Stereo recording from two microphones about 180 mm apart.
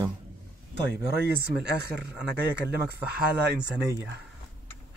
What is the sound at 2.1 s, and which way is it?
Speech, 5° right (ahead or behind).